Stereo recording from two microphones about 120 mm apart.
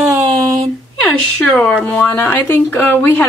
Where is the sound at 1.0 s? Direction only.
5° left (ahead or behind).